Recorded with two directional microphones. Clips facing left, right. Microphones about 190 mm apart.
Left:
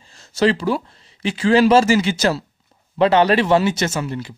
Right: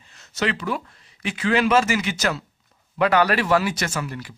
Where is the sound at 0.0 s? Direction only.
30° left (ahead or behind).